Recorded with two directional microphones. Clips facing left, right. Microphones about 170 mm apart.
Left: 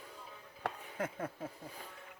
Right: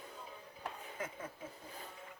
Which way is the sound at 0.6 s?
60° left (ahead or behind).